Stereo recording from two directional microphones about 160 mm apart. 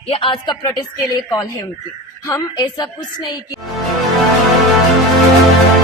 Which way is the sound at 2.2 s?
20° left (ahead or behind).